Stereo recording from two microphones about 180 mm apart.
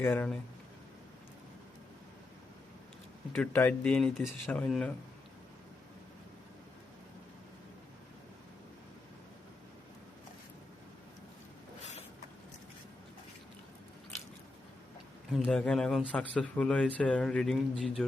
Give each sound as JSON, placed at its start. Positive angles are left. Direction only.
{"t": 0.0, "sound": "speech", "side_deg": 10}
{"t": 3.3, "sound": "speech", "side_deg": 5}
{"t": 15.3, "sound": "speech", "side_deg": 5}